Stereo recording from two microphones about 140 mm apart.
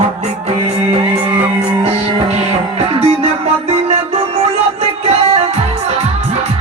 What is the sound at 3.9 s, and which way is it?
Music, 45° right (ahead or behind).